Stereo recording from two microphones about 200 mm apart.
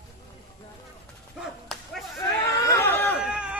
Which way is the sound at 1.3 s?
Centre (ahead or behind).